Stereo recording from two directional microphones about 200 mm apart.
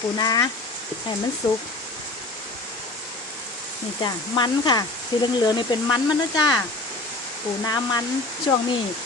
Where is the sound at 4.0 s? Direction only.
20° left (ahead or behind).